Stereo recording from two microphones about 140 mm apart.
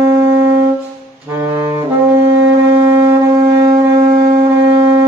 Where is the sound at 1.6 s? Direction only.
15° right (ahead or behind).